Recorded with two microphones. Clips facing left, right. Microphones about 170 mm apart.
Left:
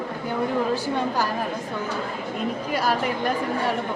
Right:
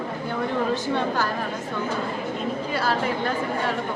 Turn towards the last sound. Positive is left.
turn(degrees=15)  # may be behind; listen again after turning